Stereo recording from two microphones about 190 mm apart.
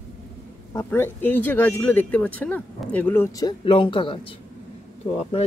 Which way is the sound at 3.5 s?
25° left (ahead or behind).